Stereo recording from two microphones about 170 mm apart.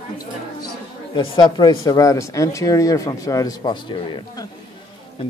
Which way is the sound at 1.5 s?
20° left (ahead or behind).